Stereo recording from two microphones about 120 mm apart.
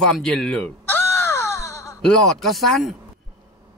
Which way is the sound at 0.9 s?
20° left (ahead or behind).